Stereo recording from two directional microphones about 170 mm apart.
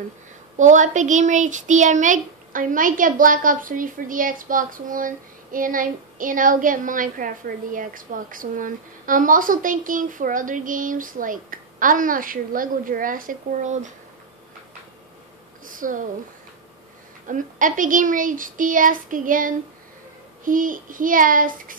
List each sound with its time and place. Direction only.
0.6 s speech: 45° right (ahead or behind)
15.6 s a sound: 50° right (ahead or behind)
17.3 s speech: 50° right (ahead or behind)